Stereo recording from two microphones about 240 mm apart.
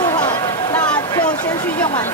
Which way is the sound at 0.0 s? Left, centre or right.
Centre.